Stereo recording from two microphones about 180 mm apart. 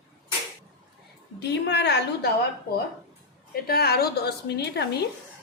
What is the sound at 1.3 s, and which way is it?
Speech, 70° left (ahead or behind).